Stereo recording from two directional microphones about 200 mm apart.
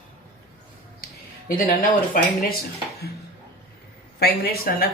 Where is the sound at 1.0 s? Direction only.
45° left (ahead or behind).